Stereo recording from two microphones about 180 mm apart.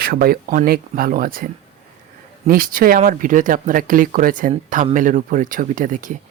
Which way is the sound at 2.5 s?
50° right (ahead or behind).